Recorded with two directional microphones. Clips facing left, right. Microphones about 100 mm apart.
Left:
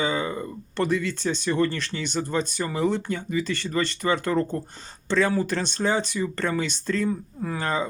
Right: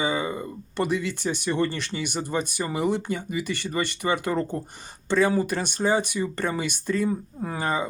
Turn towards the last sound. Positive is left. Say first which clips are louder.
# even
turn(degrees=-15)  # may be behind; listen again after turning